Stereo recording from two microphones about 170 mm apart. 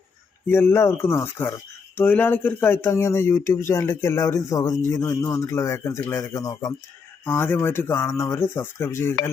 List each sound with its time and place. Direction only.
0.4 s speech: 15° left (ahead or behind)